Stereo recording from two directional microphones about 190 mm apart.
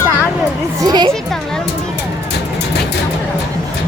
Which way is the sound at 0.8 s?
20° right (ahead or behind).